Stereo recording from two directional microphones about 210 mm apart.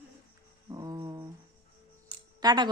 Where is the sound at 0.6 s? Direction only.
20° right (ahead or behind).